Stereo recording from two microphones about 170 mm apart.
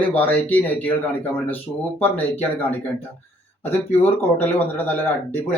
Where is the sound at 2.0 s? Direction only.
10° left (ahead or behind).